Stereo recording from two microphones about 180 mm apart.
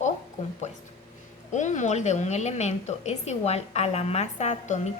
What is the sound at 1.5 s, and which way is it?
A woman's voice, 40° left (ahead or behind).